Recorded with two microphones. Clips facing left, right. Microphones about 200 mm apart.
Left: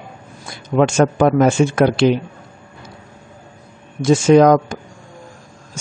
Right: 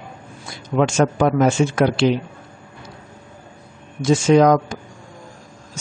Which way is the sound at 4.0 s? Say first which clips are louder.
Left 3 dB; 50° left (ahead or behind).